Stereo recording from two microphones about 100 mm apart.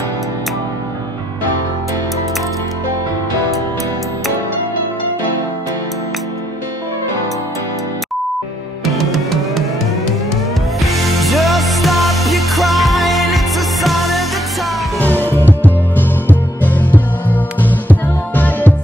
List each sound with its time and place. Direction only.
8.9 s music: centre (ahead or behind)
10.8 s music: centre (ahead or behind)
15.0 s music: 20° left (ahead or behind)